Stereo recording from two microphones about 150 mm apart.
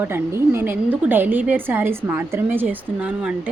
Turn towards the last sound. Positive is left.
turn(degrees=-10)  # may be behind; listen again after turning